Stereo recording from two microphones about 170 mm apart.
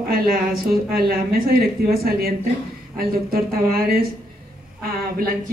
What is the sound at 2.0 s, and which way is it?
Speech, 60° right (ahead or behind).